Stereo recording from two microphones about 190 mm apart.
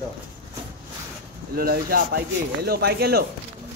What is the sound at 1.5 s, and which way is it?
Speech, 55° right (ahead or behind).